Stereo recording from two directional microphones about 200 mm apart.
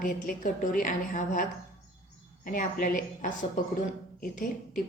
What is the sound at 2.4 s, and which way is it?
A woman's voice, 40° left (ahead or behind).